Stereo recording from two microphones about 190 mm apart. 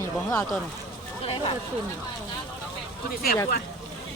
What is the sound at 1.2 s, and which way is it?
Speech, 30° left (ahead or behind).